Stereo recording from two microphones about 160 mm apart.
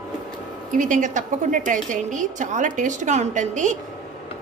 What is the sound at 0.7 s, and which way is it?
A woman's voice, 50° right (ahead or behind).